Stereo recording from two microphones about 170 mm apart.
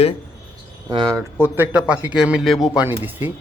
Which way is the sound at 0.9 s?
25° right (ahead or behind).